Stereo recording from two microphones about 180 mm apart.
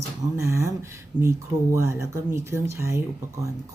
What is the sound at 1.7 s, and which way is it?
Speech, 15° right (ahead or behind).